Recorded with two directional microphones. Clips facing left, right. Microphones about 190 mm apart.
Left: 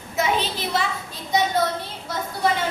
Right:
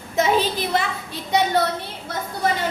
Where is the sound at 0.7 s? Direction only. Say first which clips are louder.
Right 2 dB; 70° right (ahead or behind).